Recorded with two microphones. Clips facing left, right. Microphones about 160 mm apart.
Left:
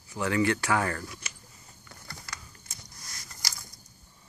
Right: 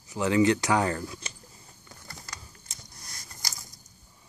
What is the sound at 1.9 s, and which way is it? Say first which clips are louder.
Typing: left 1 dB; 20° right (ahead or behind).